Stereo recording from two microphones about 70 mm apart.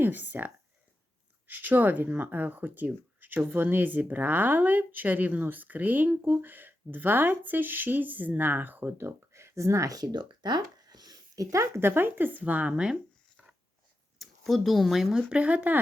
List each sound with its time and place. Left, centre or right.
0.0 s speech: right
14.2 s speech: centre
15.3 s speech: centre